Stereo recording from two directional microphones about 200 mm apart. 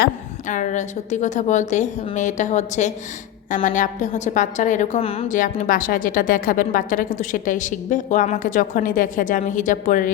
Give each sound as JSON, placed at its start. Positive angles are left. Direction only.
{"t": 0.0, "sound": "a woman's voice", "side_deg": 40}